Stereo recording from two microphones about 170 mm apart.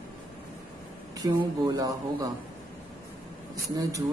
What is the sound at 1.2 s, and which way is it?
Speech, 20° right (ahead or behind).